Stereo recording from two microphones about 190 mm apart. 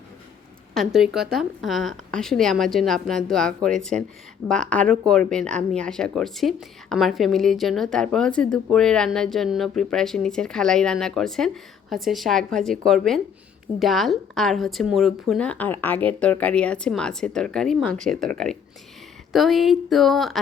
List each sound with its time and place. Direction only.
0.7 s speech: centre (ahead or behind)
19.3 s speech: centre (ahead or behind)